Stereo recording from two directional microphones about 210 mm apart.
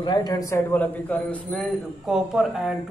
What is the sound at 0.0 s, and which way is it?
A man's voice, 20° left (ahead or behind).